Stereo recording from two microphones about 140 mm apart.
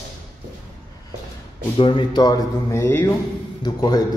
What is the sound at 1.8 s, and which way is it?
Speech, 35° left (ahead or behind).